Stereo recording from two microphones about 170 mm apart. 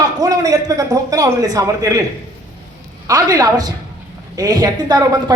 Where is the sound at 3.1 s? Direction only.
20° right (ahead or behind).